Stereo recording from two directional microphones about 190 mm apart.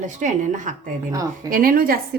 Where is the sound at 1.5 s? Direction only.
50° right (ahead or behind).